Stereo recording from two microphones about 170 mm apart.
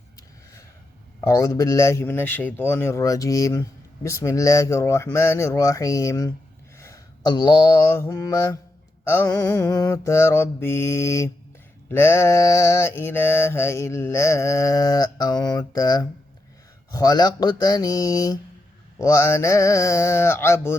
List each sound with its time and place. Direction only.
1.3 s speech: 20° left (ahead or behind)
6.7 s mantra: 20° left (ahead or behind)
16.9 s speech: 20° left (ahead or behind)
18.9 s mantra: 20° left (ahead or behind)